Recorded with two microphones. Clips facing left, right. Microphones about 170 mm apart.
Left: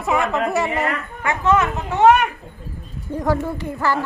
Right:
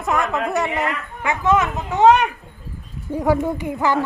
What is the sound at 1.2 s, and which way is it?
Speech, 15° right (ahead or behind).